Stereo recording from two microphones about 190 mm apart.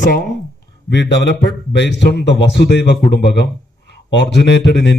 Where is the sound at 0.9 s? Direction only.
65° left (ahead or behind).